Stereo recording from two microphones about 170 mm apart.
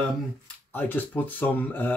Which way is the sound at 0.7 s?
10° left (ahead or behind).